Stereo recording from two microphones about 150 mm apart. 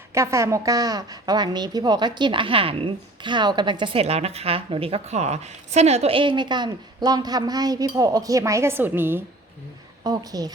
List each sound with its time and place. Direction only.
0.1 s a woman's voice: 20° right (ahead or behind)
10.0 s a woman's voice: 25° right (ahead or behind)